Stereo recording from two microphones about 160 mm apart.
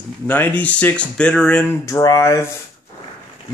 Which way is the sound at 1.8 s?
20° left (ahead or behind).